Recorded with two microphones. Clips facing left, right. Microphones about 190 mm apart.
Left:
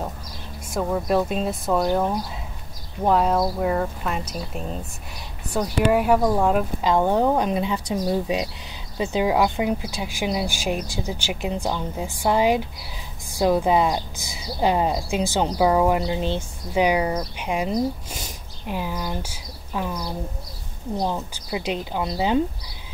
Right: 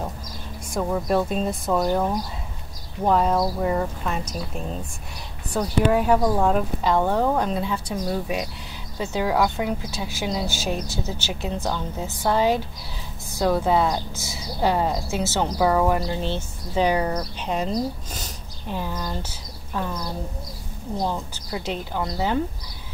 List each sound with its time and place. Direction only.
0.7 s speech: 5° left (ahead or behind)